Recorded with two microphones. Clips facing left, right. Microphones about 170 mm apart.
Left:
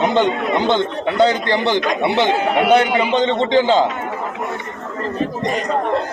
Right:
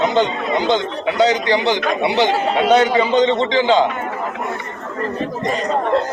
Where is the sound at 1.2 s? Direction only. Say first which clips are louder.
Even; 55° left (ahead or behind).